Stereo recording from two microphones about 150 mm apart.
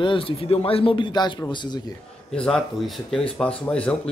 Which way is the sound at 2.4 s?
5° left (ahead or behind).